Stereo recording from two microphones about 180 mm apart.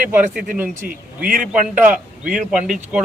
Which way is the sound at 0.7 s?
50° right (ahead or behind).